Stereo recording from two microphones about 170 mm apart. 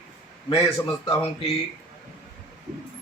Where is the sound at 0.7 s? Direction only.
15° left (ahead or behind).